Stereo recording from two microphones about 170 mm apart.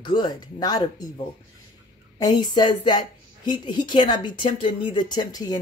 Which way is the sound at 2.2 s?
25° left (ahead or behind).